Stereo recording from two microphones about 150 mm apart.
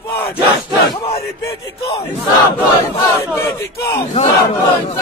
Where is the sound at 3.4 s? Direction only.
15° left (ahead or behind).